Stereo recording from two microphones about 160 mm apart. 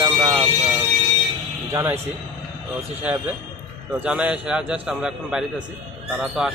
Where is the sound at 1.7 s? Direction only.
20° right (ahead or behind).